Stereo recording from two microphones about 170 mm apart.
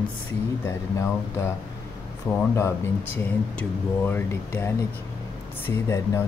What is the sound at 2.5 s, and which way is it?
Speech, 15° left (ahead or behind).